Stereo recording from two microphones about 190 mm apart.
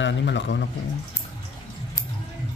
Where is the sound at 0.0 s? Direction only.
70° left (ahead or behind).